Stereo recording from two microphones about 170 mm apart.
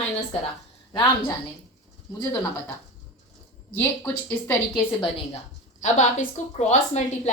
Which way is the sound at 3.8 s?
10° left (ahead or behind).